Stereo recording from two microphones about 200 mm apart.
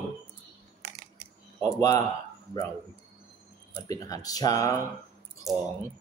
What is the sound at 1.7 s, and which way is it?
Speech, 15° left (ahead or behind).